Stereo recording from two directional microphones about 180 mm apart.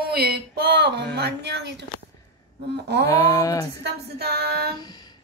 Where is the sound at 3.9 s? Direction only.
65° right (ahead or behind).